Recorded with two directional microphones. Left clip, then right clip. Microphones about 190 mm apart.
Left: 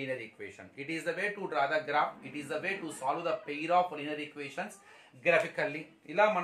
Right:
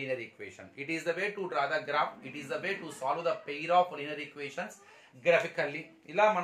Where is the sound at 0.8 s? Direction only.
20° right (ahead or behind).